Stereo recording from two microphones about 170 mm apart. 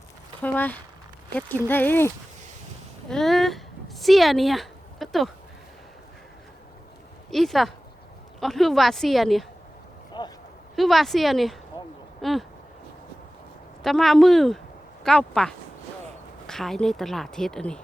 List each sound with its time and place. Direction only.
0.4 s speech: 10° left (ahead or behind)
3.1 s speech: centre (ahead or behind)
7.3 s a woman's voice: centre (ahead or behind)
10.1 s a sound: 25° left (ahead or behind)
10.8 s a woman's voice: centre (ahead or behind)
13.8 s a woman's voice: centre (ahead or behind)